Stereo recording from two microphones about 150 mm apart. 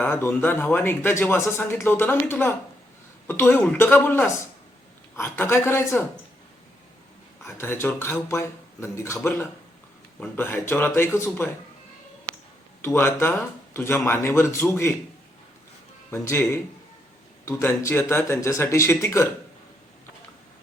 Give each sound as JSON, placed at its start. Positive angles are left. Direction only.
{"t": 0.0, "sound": "speech", "side_deg": 15}
{"t": 7.4, "sound": "speech", "side_deg": 15}
{"t": 12.8, "sound": "speech", "side_deg": 15}
{"t": 16.2, "sound": "speech", "side_deg": 15}